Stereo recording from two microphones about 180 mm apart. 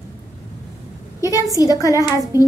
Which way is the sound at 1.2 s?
20° left (ahead or behind).